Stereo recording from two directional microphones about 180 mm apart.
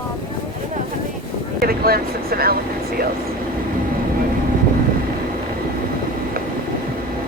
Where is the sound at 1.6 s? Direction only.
55° right (ahead or behind).